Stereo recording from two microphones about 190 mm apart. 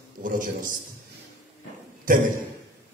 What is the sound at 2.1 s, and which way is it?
Speech, 45° right (ahead or behind).